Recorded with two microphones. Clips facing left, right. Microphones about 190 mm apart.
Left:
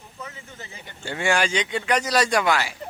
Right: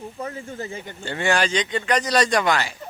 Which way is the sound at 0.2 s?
50° right (ahead or behind).